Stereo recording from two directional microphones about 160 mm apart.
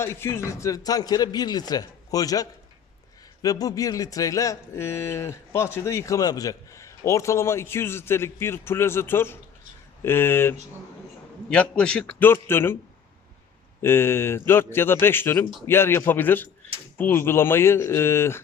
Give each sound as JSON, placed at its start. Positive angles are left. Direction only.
{"t": 0.0, "sound": "a man's voice", "side_deg": 15}
{"t": 13.8, "sound": "a man's voice", "side_deg": 15}